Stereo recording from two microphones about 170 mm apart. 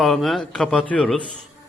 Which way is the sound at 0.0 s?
Centre (ahead or behind).